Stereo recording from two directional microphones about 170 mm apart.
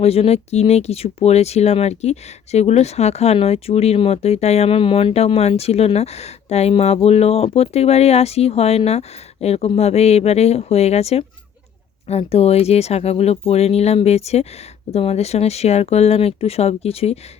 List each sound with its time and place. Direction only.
0.0 s speech: 35° left (ahead or behind)